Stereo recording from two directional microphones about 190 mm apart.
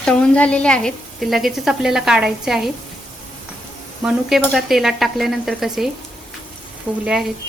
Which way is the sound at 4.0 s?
Centre (ahead or behind).